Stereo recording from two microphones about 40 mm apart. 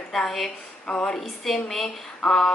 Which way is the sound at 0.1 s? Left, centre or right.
Centre.